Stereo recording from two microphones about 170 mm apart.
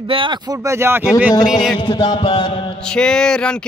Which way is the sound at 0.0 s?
30° right (ahead or behind).